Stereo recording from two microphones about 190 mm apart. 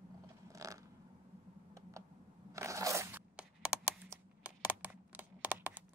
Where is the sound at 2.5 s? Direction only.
15° right (ahead or behind).